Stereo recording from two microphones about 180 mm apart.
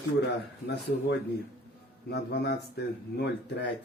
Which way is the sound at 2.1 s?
65° left (ahead or behind).